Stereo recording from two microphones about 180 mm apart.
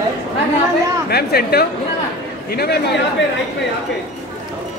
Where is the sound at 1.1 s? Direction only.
60° left (ahead or behind).